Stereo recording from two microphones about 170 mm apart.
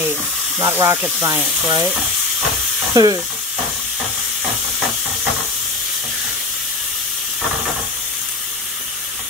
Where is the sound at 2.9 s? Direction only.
20° right (ahead or behind).